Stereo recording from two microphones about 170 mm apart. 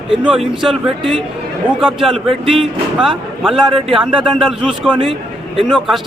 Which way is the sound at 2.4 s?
35° right (ahead or behind).